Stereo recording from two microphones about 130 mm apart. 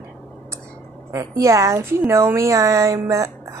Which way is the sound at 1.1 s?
25° right (ahead or behind).